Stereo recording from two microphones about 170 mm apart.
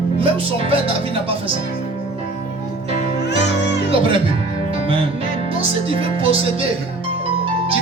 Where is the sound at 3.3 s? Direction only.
90° left.